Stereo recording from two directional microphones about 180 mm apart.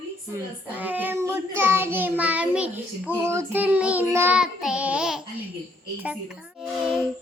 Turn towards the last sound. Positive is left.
turn(degrees=-5)  # may be behind; listen again after turning